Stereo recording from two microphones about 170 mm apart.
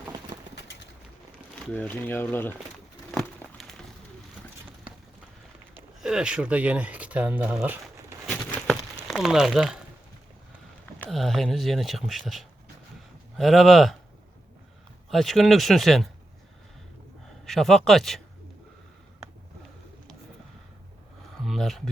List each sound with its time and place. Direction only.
0.5 s bird: 90° left
1.7 s speech: 10° left (ahead or behind)
3.2 s a sound: centre (ahead or behind)
5.7 s speech: 5° right (ahead or behind)
9.0 s speech: centre (ahead or behind)
11.0 s speech: centre (ahead or behind)
15.1 s speech: centre (ahead or behind)
17.4 s speech: centre (ahead or behind)
21.4 s a sound: centre (ahead or behind)